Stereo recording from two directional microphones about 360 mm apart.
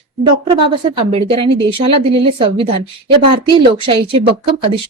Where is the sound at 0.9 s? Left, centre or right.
Centre.